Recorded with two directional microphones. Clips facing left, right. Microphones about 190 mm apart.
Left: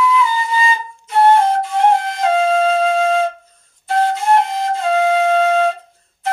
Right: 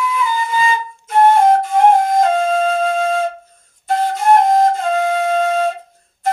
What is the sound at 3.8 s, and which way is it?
Flute, 45° right (ahead or behind).